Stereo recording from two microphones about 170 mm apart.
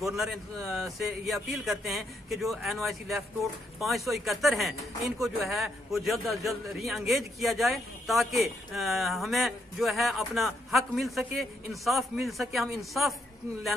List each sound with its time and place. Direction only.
0.0 s speech: centre (ahead or behind)